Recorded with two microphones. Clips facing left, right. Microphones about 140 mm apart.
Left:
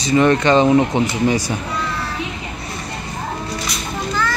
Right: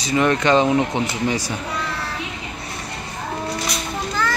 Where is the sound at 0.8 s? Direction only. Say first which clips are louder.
Left 4 dB; 15° left (ahead or behind).